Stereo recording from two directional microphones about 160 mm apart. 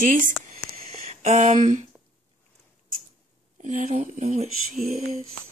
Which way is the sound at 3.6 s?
50° right (ahead or behind).